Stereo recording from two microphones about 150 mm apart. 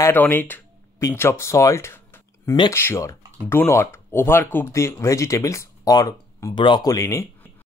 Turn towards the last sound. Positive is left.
turn(degrees=20)  # may be behind; listen again after turning